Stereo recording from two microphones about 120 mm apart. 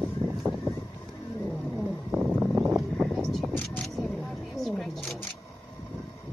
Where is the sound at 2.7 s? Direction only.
Centre (ahead or behind).